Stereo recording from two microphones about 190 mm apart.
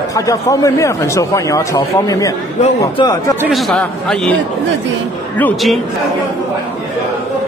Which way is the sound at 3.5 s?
5° left (ahead or behind).